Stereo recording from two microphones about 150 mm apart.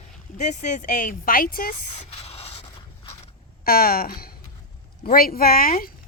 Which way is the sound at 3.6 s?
80° left.